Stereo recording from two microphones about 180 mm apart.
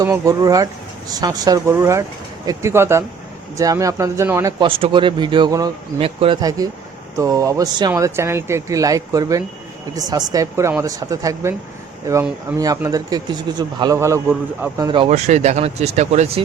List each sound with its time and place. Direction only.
0.0 s a man's voice: 20° right (ahead or behind)
4.6 s a man's voice: 30° right (ahead or behind)
6.0 s a man's voice: 30° right (ahead or behind); by 14.8 s 15° right (ahead or behind)
14.8 s a man's voice: 30° right (ahead or behind)
15.3 s speech: 40° right (ahead or behind)